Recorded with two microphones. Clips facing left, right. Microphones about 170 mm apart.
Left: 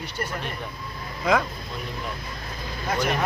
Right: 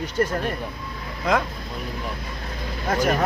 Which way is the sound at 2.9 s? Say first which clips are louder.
Right 4 dB; 45° right (ahead or behind).